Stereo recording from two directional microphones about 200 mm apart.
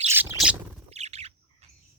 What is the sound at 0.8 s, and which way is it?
Bird, 35° right (ahead or behind).